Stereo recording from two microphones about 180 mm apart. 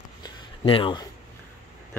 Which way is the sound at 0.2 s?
30° left (ahead or behind).